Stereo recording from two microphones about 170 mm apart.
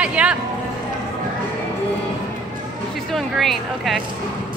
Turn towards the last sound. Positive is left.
turn(degrees=0)  # may be behind; listen again after turning